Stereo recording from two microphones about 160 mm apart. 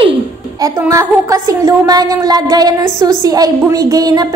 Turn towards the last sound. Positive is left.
turn(degrees=-25)  # may be behind; listen again after turning